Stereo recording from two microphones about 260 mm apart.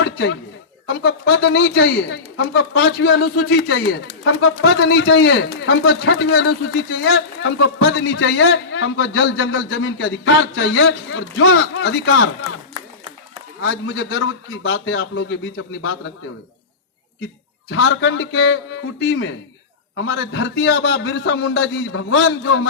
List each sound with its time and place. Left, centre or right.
0.0 s a sound: left
1.5 s a man's voice: left
4.9 s a man's voice: left
7.1 s a man's voice: left
13.7 s a man's voice: left
17.7 s a man's voice: left